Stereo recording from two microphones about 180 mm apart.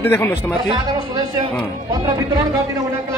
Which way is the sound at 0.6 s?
30° right (ahead or behind).